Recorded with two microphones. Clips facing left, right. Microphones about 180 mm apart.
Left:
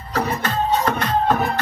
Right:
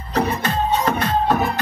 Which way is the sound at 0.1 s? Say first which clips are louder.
Right 2 dB; 15° right (ahead or behind).